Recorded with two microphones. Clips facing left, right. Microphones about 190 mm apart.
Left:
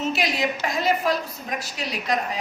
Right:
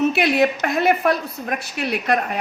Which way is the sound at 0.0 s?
60° right (ahead or behind).